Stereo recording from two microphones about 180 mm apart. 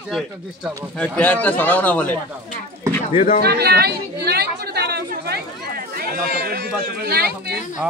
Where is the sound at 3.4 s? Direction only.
60° right (ahead or behind).